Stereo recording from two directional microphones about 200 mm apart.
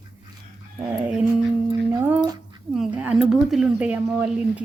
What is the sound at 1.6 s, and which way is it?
Speech, 20° right (ahead or behind).